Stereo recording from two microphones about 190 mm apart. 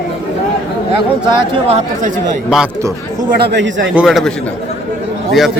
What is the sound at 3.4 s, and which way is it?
Speech, 65° right (ahead or behind).